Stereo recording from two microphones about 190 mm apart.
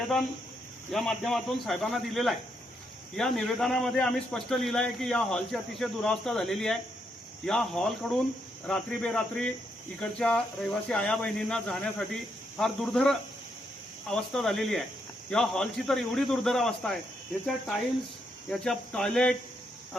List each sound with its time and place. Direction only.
0.0 s a man's voice: centre (ahead or behind)
18.6 s a man's voice: 5° left (ahead or behind)